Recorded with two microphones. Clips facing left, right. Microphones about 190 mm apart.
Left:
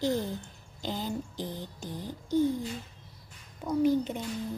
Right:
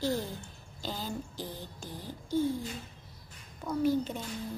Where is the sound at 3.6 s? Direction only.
15° left (ahead or behind).